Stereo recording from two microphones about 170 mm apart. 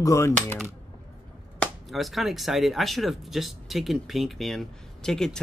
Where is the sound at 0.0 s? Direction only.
15° left (ahead or behind).